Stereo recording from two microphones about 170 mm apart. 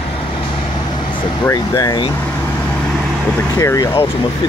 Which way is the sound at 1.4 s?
20° left (ahead or behind).